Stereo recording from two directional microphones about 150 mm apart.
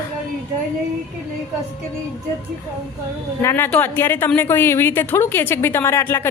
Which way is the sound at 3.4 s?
15° left (ahead or behind).